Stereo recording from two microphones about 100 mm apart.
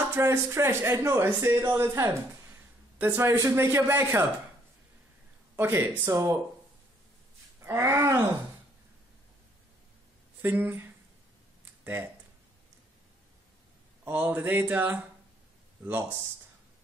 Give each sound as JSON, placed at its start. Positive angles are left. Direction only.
{"t": 0.1, "sound": "speech", "side_deg": -25}
{"t": 5.6, "sound": "speech", "side_deg": -25}
{"t": 7.6, "sound": "speech", "side_deg": -25}
{"t": 10.4, "sound": "speech", "side_deg": -20}
{"t": 14.0, "sound": "a sound", "side_deg": -15}